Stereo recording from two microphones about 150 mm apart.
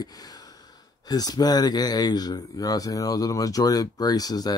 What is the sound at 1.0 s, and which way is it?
Speech, 25° left (ahead or behind).